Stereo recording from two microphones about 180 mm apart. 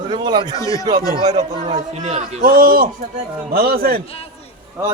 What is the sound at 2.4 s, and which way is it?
A man's voice, 55° right (ahead or behind).